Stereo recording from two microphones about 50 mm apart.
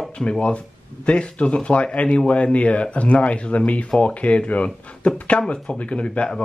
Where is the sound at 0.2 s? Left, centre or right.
Left.